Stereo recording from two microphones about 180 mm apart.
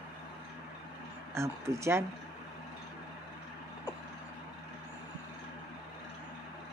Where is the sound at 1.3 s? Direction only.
15° right (ahead or behind).